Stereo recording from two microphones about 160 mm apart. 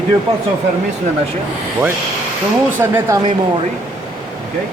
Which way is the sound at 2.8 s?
15° right (ahead or behind).